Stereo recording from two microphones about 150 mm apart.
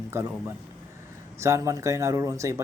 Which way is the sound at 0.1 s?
15° right (ahead or behind).